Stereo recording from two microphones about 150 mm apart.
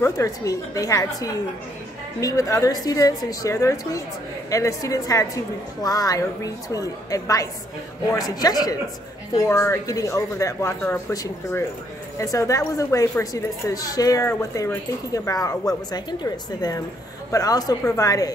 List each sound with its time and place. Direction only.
0.0 s speech: 20° left (ahead or behind)